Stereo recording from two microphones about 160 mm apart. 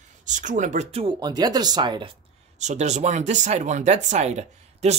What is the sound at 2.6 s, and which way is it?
Speech, 45° right (ahead or behind).